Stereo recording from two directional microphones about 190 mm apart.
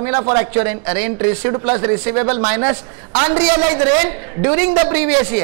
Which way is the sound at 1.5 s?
25° right (ahead or behind).